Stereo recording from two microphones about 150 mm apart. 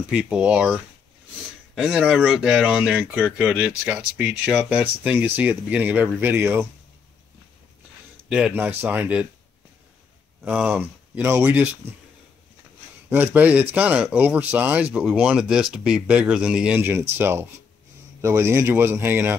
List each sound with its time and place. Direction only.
0.0 s speech: 5° right (ahead or behind)
1.8 s speech: 5° right (ahead or behind)
8.3 s speech: 5° right (ahead or behind)
10.4 s speech: 5° right (ahead or behind)
13.1 s speech: 10° right (ahead or behind)